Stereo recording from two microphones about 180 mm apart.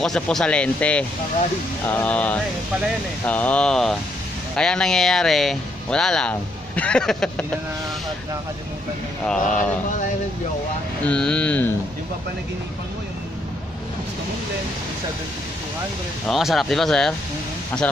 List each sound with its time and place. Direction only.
0.0 s speech: centre (ahead or behind)
9.2 s speech: 5° left (ahead or behind)
11.1 s speech: 5° left (ahead or behind)
16.3 s speech: centre (ahead or behind)